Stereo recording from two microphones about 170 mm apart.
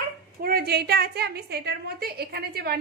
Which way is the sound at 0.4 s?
65° right (ahead or behind).